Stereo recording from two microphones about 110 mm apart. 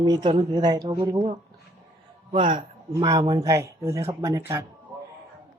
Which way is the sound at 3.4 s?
25° right (ahead or behind).